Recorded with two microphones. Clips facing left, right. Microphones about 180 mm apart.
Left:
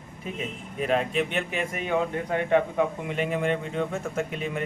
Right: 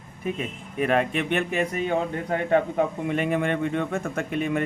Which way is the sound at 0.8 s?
60° right (ahead or behind).